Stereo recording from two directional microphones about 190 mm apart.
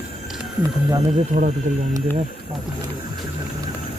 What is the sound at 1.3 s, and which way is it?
Speech, 40° right (ahead or behind).